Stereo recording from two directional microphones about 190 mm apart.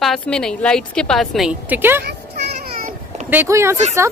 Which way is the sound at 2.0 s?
55° right (ahead or behind).